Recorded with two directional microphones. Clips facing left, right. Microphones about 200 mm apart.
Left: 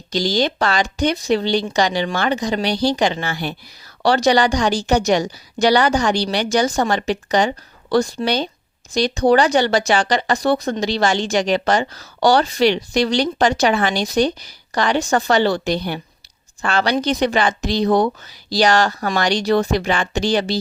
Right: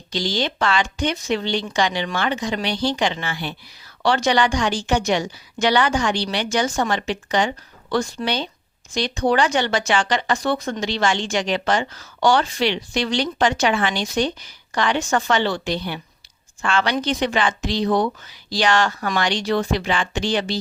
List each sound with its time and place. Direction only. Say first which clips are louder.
0.1 s speech: left 5 dB; 40° left (ahead or behind)